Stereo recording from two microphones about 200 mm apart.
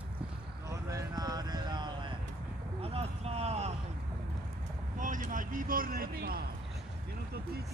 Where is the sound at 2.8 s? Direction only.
30° right (ahead or behind).